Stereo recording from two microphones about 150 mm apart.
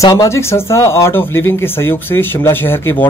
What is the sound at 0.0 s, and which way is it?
Speech, 20° left (ahead or behind).